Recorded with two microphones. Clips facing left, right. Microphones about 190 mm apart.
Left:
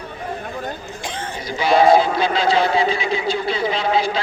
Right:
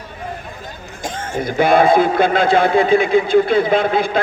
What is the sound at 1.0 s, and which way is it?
A man's voice, 55° right (ahead or behind).